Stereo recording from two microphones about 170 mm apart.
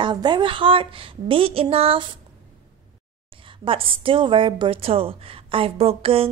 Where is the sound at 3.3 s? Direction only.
30° right (ahead or behind).